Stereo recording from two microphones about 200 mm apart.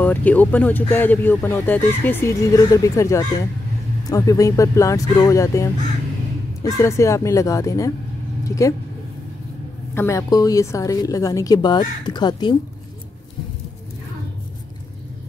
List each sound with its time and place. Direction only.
0.0 s speech: 10° left (ahead or behind)
9.9 s speech: 15° left (ahead or behind)